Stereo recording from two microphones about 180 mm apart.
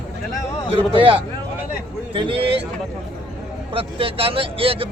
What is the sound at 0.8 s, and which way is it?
A man's voice, 30° right (ahead or behind).